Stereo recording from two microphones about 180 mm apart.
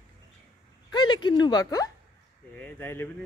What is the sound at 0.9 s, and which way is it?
Speech, 25° left (ahead or behind).